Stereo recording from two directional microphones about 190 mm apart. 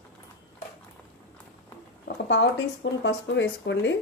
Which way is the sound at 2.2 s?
70° left (ahead or behind).